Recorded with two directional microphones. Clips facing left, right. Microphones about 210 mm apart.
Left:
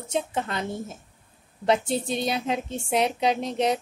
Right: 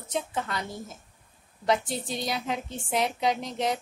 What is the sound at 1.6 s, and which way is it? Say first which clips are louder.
A woman's voice: left 4 dB; 25° left (ahead or behind).